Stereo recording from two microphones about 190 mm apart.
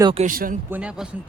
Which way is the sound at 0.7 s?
5° right (ahead or behind).